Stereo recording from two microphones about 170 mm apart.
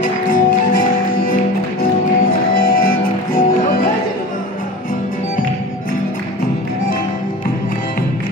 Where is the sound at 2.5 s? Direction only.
55° left (ahead or behind).